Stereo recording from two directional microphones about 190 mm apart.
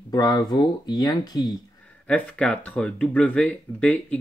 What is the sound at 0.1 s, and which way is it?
Speech, 20° left (ahead or behind).